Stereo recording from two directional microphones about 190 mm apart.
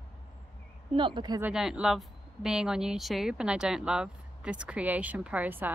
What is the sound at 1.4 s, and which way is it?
Speech, 5° right (ahead or behind).